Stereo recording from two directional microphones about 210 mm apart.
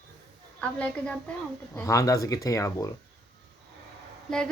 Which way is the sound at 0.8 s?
5° left (ahead or behind).